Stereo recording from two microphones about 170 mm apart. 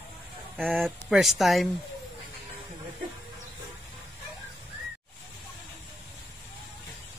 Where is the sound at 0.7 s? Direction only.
5° right (ahead or behind).